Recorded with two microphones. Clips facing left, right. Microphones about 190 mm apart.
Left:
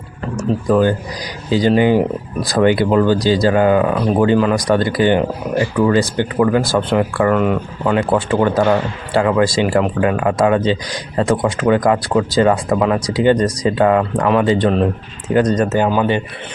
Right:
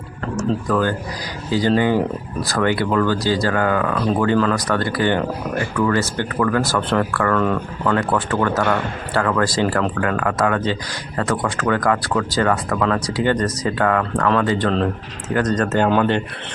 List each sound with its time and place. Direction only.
0.4 s speech: 20° left (ahead or behind)